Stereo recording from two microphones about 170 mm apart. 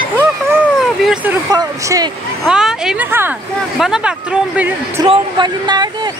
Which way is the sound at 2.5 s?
5° right (ahead or behind).